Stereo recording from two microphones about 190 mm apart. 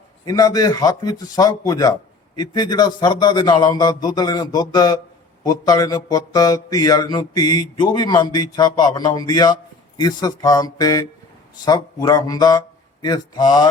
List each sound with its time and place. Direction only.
0.3 s a man's voice: 20° left (ahead or behind)